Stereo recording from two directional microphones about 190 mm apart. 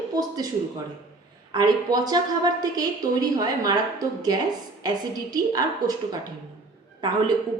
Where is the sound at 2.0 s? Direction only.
20° right (ahead or behind).